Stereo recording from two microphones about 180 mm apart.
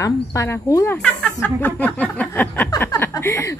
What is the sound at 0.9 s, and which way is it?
A woman's voice, 5° left (ahead or behind).